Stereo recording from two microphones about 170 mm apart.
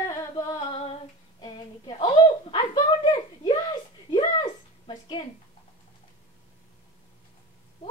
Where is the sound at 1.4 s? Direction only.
25° left (ahead or behind).